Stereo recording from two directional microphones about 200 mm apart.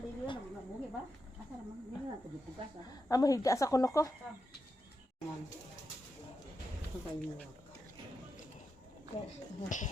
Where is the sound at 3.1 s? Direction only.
15° left (ahead or behind).